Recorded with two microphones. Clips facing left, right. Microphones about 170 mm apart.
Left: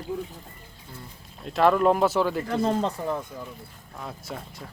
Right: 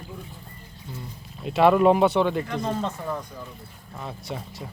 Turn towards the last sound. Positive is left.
turn(degrees=0)  # may be behind; listen again after turning